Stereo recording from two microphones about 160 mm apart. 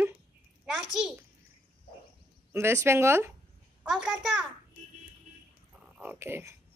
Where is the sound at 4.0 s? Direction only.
5° right (ahead or behind).